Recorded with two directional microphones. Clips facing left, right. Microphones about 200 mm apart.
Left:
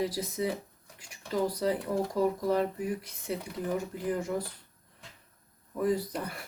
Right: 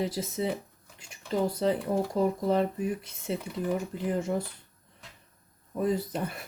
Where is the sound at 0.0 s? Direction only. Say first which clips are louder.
Right 1 dB; 25° right (ahead or behind).